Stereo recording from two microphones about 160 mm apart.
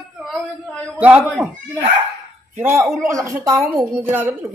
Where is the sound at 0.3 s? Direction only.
5° left (ahead or behind).